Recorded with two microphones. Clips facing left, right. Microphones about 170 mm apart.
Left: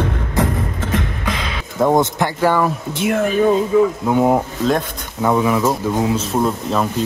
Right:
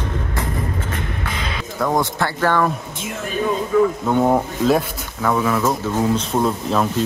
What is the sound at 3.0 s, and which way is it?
Speech, 65° left (ahead or behind).